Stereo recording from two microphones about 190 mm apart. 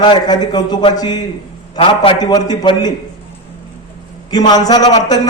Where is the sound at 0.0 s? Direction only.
25° left (ahead or behind).